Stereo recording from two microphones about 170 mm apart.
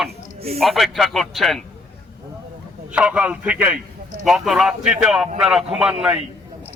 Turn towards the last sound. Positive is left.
turn(degrees=-5)  # may be behind; listen again after turning